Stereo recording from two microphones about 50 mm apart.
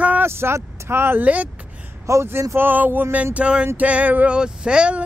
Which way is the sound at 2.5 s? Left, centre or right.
Right.